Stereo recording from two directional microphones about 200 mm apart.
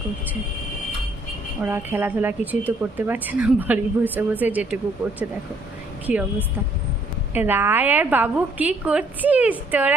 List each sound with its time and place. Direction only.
1.6 s speech: 10° right (ahead or behind)
6.1 s a woman's voice: 5° right (ahead or behind)
7.3 s speech: 10° right (ahead or behind)